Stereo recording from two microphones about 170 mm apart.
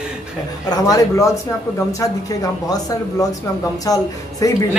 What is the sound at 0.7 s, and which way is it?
Speech, 20° left (ahead or behind).